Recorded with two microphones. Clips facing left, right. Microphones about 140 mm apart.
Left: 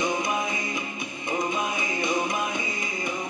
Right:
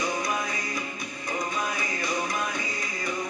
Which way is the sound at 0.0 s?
25° left (ahead or behind).